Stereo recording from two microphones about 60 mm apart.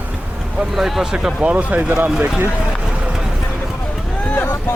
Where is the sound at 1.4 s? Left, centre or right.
Right.